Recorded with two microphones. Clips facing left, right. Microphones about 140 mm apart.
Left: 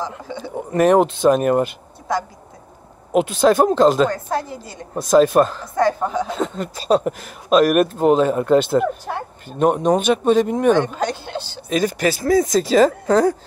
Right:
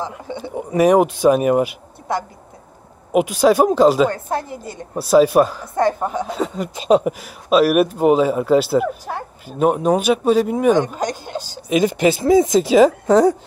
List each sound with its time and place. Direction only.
0.4 s speech: 10° right (ahead or behind)
3.1 s speech: 10° right (ahead or behind)
11.3 s speech: 40° right (ahead or behind)
11.7 s speech: 20° right (ahead or behind)